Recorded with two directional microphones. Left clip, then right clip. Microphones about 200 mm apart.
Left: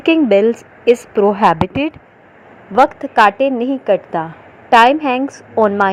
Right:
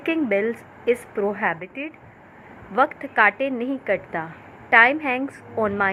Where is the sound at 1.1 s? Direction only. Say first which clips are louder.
Left 11 dB; 40° left (ahead or behind).